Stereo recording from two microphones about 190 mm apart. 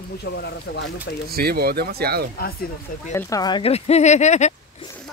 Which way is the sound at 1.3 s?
55° right (ahead or behind).